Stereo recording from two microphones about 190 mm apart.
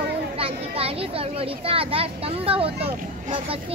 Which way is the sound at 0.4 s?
30° right (ahead or behind).